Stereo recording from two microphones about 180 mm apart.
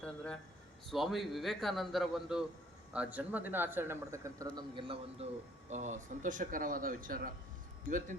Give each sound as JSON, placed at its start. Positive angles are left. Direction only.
{"t": 0.9, "sound": "a man's voice", "side_deg": 0}